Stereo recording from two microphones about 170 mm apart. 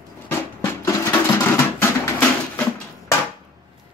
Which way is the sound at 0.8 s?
15° left (ahead or behind).